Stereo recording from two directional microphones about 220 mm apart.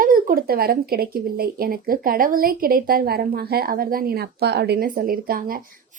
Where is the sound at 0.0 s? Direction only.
40° right (ahead or behind).